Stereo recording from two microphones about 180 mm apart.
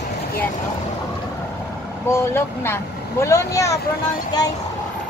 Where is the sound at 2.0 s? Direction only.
15° left (ahead or behind).